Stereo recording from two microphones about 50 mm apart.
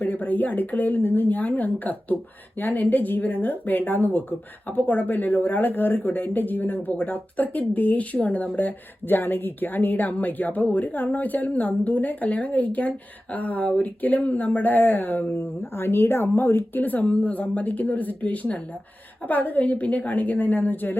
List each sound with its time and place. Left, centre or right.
0.0 s speech: left